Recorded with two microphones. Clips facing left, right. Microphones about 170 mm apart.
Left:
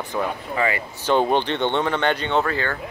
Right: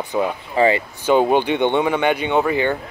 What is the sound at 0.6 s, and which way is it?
Speech, 25° right (ahead or behind).